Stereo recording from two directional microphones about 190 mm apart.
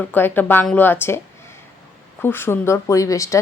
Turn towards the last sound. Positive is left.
turn(degrees=15)  # may be behind; listen again after turning